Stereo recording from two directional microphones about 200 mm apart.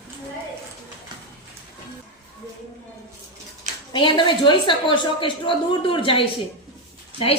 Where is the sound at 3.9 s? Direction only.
25° left (ahead or behind).